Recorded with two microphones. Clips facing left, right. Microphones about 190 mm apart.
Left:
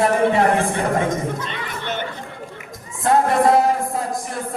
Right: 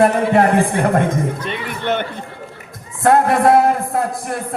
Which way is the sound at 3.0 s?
60° right (ahead or behind).